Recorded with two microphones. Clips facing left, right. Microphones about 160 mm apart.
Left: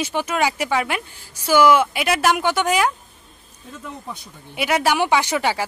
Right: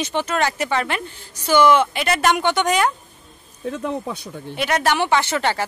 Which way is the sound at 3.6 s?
75° right (ahead or behind).